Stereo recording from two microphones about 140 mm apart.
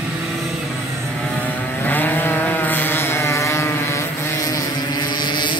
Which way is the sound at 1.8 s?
15° left (ahead or behind).